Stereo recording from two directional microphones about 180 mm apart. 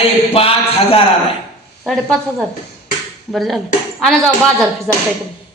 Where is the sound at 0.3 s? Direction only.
30° left (ahead or behind).